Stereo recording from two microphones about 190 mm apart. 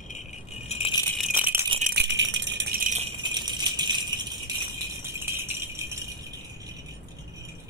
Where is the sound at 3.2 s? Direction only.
25° right (ahead or behind).